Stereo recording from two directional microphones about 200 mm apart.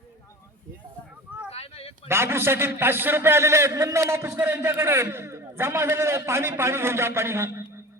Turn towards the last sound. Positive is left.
turn(degrees=-10)  # may be behind; listen again after turning